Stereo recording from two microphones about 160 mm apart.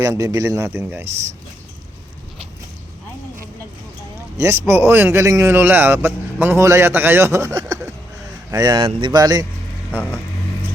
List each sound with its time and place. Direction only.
0.0 s a man's voice: 20° right (ahead or behind)
4.4 s a man's voice: 20° right (ahead or behind)